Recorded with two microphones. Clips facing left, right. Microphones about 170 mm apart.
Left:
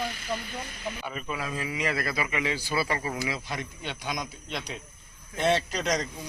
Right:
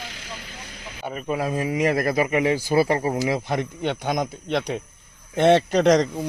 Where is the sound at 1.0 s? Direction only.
45° right (ahead or behind).